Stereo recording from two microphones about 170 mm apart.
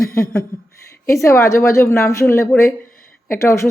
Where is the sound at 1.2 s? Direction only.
15° left (ahead or behind).